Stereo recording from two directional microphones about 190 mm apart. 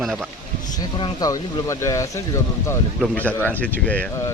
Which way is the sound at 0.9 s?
20° left (ahead or behind).